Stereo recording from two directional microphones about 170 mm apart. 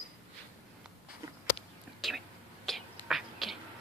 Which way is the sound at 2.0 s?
Centre (ahead or behind).